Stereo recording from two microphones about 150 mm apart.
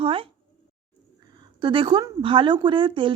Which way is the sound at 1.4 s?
30° right (ahead or behind).